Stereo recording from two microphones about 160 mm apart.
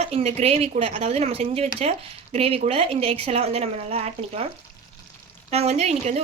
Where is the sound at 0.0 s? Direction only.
40° right (ahead or behind).